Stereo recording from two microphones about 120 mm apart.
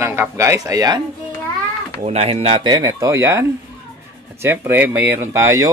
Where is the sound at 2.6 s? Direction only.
30° right (ahead or behind).